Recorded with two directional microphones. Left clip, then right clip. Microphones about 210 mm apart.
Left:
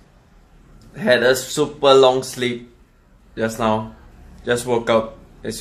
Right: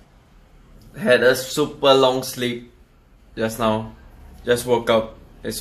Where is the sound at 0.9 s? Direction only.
5° left (ahead or behind).